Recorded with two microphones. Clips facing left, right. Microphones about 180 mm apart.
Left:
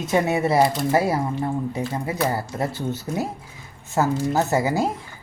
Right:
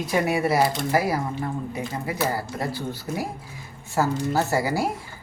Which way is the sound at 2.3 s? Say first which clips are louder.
Left 2 dB; 25° left (ahead or behind).